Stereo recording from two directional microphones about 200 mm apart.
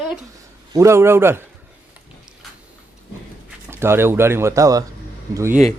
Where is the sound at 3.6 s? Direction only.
10° right (ahead or behind).